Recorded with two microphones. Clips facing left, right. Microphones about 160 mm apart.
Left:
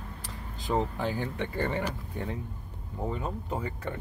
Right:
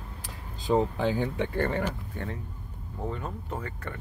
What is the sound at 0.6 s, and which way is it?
Speech, 20° right (ahead or behind).